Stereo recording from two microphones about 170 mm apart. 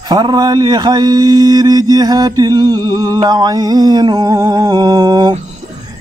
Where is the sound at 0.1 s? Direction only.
25° right (ahead or behind).